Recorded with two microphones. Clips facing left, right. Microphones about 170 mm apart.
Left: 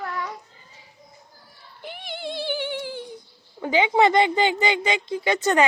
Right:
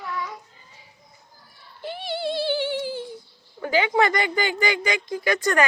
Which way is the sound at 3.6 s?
20° left (ahead or behind).